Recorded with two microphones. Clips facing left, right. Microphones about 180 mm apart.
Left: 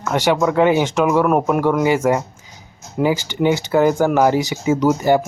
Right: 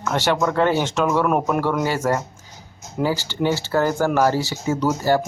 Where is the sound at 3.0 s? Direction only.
15° left (ahead or behind).